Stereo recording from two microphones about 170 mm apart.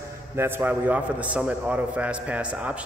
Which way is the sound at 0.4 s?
10° right (ahead or behind).